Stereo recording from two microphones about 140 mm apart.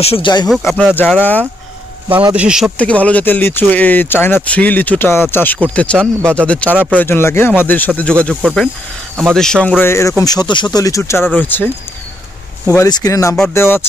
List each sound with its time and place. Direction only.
0.0 s speech: 40° left (ahead or behind)
0.6 s speech: 15° left (ahead or behind)
2.3 s speech: 5° right (ahead or behind)
2.8 s speech: 10° left (ahead or behind)
8.4 s speech: 5° right (ahead or behind)
9.8 s speech: 20° left (ahead or behind)
12.6 s speech: 25° left (ahead or behind)